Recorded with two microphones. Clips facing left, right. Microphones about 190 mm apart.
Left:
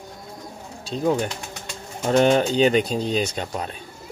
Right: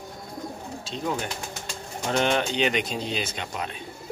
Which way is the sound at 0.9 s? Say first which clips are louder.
Left 8 dB; 40° left (ahead or behind).